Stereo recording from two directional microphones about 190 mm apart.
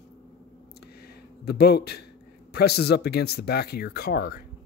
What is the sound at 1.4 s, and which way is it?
Speech, 55° left (ahead or behind).